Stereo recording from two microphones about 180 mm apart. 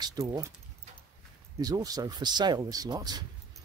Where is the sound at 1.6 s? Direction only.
20° right (ahead or behind).